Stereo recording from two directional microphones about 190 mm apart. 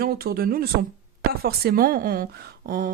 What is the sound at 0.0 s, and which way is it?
Speech, 50° right (ahead or behind).